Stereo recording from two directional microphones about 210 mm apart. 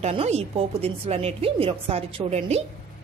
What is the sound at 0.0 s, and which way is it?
Speech, 30° right (ahead or behind).